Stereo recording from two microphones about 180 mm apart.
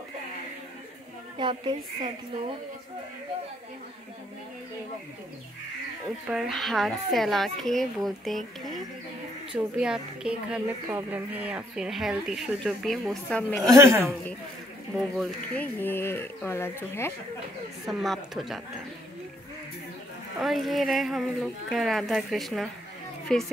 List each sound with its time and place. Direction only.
1.4 s speech: 25° right (ahead or behind)
6.2 s speech: 5° right (ahead or behind)
13.7 s speech: 15° right (ahead or behind)
15.1 s speech: 10° left (ahead or behind)
17.8 s speech: centre (ahead or behind)
20.3 s speech: centre (ahead or behind)